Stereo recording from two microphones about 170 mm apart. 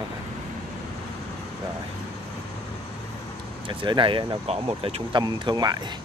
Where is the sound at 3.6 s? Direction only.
30° right (ahead or behind).